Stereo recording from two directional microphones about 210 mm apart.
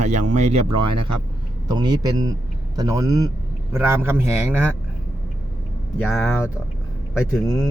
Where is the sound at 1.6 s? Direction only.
20° right (ahead or behind).